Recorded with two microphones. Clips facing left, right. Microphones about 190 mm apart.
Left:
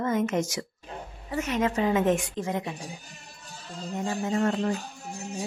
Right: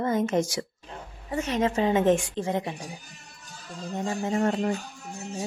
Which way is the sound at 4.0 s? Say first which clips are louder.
Right 1 dB; 30° right (ahead or behind).